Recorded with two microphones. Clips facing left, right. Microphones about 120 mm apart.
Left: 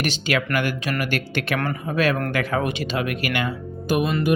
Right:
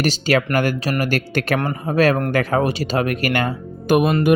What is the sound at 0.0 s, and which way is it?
Speech, 35° right (ahead or behind).